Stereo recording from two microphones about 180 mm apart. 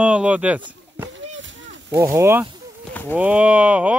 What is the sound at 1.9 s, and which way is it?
Speech, 15° right (ahead or behind).